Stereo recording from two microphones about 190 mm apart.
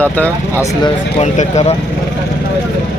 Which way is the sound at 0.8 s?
35° left (ahead or behind).